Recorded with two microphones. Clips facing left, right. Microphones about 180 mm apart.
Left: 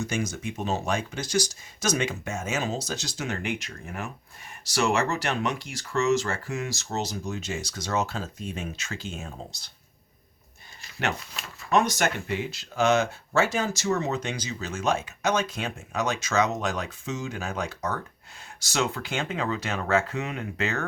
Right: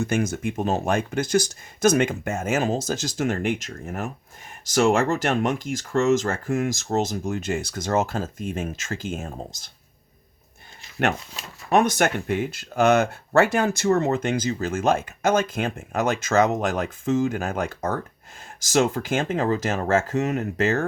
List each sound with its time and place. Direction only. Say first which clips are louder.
0.0 s speech: right 6 dB; 55° right (ahead or behind)
11.7 s speech: right 4 dB; 55° right (ahead or behind)